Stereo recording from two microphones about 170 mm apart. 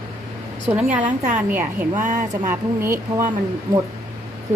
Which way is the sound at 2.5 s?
15° right (ahead or behind).